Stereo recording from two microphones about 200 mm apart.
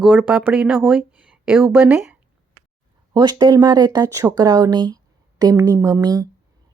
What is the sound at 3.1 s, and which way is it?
A woman's voice, 20° right (ahead or behind).